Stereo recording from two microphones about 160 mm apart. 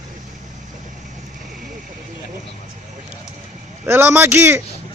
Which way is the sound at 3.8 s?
15° right (ahead or behind).